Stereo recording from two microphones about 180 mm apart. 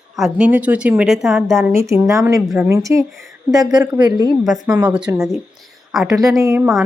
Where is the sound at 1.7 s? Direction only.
15° right (ahead or behind).